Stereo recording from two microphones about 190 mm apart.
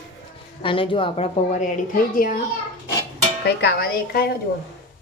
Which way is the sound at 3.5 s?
60° left (ahead or behind).